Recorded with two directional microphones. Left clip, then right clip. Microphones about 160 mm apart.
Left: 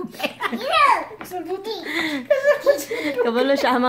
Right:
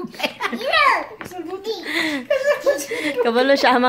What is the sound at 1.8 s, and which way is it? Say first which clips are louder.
Speech: right 4 dB; 5° right (ahead or behind).